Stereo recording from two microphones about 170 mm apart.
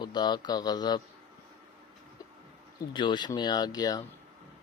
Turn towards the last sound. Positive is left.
turn(degrees=20)  # may be behind; listen again after turning